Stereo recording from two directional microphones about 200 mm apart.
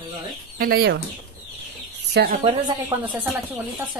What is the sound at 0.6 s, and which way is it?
Speech, 50° right (ahead or behind).